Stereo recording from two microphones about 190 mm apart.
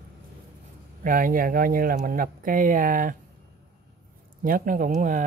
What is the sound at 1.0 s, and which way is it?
Speech, 45° right (ahead or behind).